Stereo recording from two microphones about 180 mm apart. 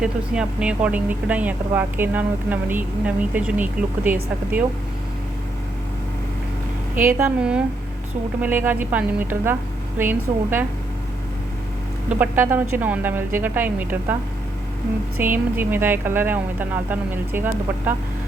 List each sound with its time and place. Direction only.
0.0 s speech: 5° right (ahead or behind)
6.9 s speech: 10° right (ahead or behind)
12.0 s speech: 10° right (ahead or behind)
15.2 s speech: 10° right (ahead or behind)